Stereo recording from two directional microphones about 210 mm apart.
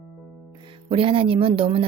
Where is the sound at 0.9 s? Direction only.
25° right (ahead or behind).